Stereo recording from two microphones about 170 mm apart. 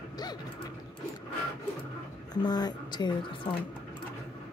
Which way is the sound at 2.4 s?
25° left (ahead or behind).